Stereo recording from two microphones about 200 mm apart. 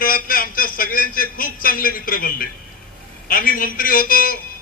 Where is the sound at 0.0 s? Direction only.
45° left (ahead or behind).